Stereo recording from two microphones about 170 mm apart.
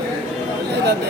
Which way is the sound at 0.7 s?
75° right (ahead or behind).